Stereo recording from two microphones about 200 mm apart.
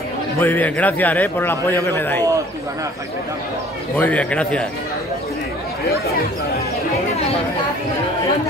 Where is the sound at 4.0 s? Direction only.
5° left (ahead or behind).